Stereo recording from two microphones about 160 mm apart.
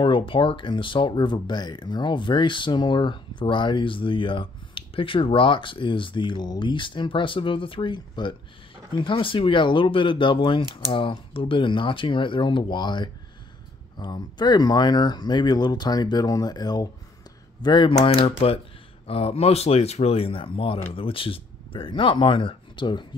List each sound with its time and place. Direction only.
0.0 s speech: 30° left (ahead or behind)